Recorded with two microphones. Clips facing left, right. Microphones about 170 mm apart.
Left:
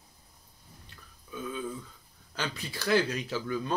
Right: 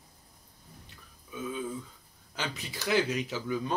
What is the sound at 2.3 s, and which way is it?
A man's voice, 15° right (ahead or behind).